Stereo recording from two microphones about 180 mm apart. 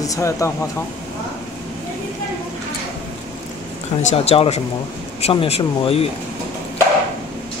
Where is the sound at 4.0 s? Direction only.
35° left (ahead or behind).